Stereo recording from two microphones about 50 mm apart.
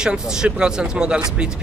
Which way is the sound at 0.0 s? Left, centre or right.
Centre.